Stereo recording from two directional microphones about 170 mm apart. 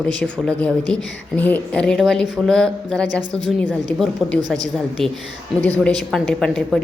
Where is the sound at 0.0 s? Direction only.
5° left (ahead or behind).